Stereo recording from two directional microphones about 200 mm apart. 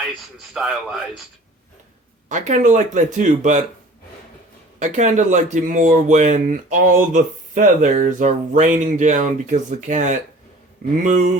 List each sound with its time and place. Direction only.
0.5 s speech: centre (ahead or behind)
2.3 s speech: 40° right (ahead or behind)
4.8 s speech: 35° right (ahead or behind)